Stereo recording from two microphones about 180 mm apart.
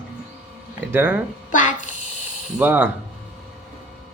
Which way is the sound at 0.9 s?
10° right (ahead or behind).